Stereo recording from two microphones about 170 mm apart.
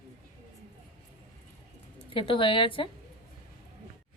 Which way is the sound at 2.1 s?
30° left (ahead or behind).